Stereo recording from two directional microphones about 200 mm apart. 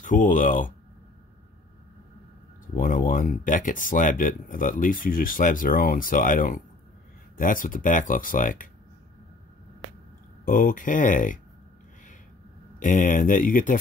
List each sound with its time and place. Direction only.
0.0 s speech: 40° left (ahead or behind)
2.6 s speech: 40° left (ahead or behind)
10.4 s speech: 45° left (ahead or behind)
12.7 s speech: 40° left (ahead or behind)